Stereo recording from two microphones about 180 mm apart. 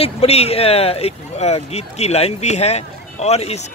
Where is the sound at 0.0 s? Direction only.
35° left (ahead or behind).